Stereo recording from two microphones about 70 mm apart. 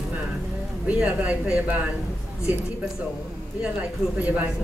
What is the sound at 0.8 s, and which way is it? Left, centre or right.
Speech, centre.